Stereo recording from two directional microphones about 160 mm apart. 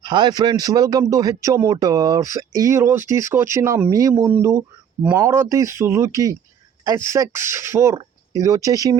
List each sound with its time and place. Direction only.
0.0 s speech: 30° right (ahead or behind)